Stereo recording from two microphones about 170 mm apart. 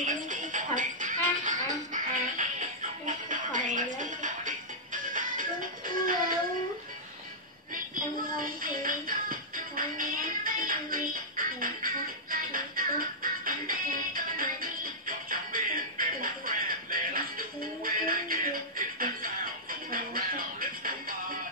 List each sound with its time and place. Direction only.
0.0 s music: 50° right (ahead or behind)
7.7 s music: 55° right (ahead or behind)